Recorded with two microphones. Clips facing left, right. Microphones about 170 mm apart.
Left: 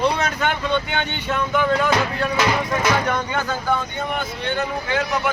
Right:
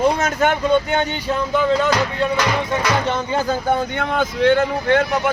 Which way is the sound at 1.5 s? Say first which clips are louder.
Right 2 dB; 25° right (ahead or behind).